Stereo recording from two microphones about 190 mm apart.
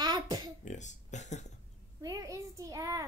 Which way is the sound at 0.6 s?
40° left (ahead or behind).